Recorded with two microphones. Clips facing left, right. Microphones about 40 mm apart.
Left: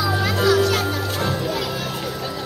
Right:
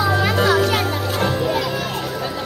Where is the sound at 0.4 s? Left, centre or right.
Right.